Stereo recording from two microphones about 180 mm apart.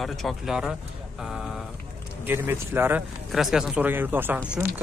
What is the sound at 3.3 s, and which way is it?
Speech, centre (ahead or behind).